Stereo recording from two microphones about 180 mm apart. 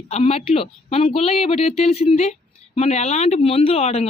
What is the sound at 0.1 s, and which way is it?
Speech, 35° left (ahead or behind).